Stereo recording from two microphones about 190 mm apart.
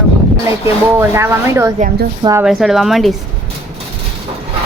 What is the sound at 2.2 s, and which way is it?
Speech, 15° right (ahead or behind).